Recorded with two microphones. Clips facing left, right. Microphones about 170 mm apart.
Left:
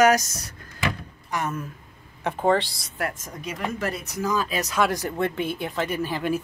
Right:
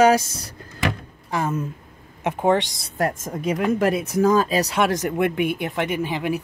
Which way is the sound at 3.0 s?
45° right (ahead or behind).